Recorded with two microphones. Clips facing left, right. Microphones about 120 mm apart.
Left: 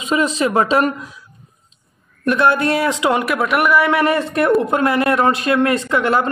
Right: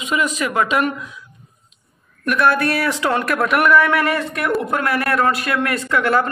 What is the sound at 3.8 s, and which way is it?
Speech, 20° left (ahead or behind).